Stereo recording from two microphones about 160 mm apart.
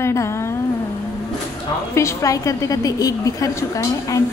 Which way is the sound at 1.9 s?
20° left (ahead or behind).